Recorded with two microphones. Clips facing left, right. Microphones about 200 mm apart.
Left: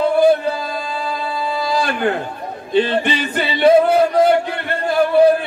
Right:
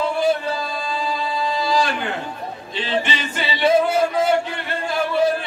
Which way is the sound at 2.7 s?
55° left (ahead or behind).